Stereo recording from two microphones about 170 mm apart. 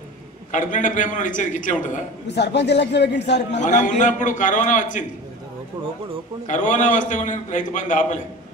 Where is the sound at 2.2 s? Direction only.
85° left.